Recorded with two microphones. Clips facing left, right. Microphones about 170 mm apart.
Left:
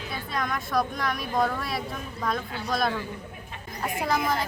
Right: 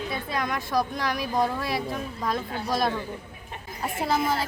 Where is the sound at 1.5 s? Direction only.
25° right (ahead or behind).